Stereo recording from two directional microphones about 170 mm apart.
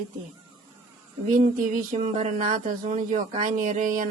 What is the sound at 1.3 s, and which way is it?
Speech, 50° right (ahead or behind).